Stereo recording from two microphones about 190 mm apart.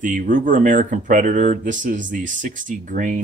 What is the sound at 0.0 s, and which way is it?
Speech, 45° right (ahead or behind).